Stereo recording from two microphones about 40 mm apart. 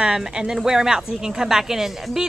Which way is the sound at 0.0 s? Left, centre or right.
Centre.